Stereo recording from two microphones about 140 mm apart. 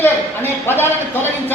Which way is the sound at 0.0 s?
15° left (ahead or behind).